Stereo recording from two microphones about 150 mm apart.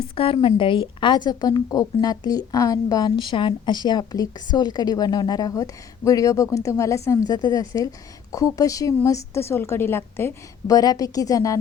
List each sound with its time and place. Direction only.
0.2 s a woman's voice: 35° left (ahead or behind)